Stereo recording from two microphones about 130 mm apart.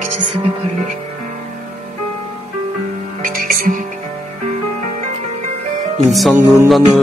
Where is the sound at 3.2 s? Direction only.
90° right.